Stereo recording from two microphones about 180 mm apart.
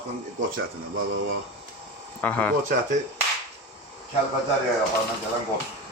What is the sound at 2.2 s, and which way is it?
Speech, 10° left (ahead or behind).